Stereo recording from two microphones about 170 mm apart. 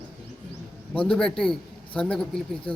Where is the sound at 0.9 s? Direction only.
5° left (ahead or behind).